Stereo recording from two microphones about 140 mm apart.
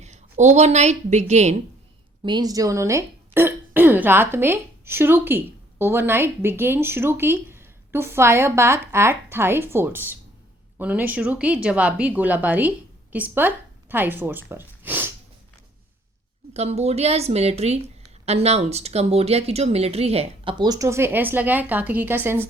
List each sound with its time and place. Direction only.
0.0 s a woman's voice: 55° right (ahead or behind)
2.2 s speech: 30° right (ahead or behind); by 15.1 s 15° right (ahead or behind)
16.6 s a woman's voice: 50° right (ahead or behind); by 22.4 s 15° right (ahead or behind)